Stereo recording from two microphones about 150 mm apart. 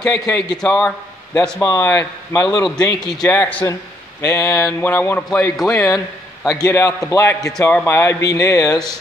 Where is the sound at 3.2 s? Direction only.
10° left (ahead or behind).